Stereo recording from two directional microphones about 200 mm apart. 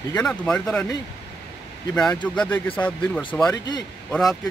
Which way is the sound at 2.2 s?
5° left (ahead or behind).